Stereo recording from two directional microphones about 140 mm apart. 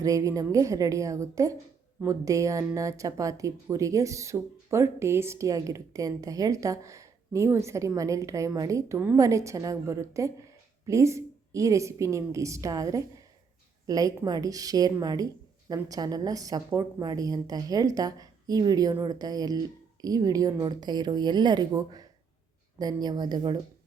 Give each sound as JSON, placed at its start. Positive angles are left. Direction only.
{"t": 0.0, "sound": "a woman's voice", "side_deg": -25}